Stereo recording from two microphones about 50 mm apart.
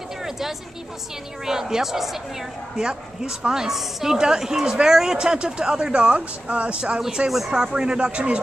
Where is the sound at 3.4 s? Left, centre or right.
Centre.